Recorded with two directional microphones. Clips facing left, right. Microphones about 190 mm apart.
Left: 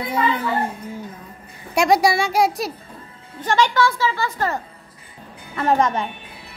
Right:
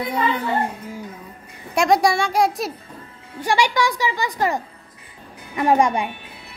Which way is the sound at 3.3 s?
10° right (ahead or behind).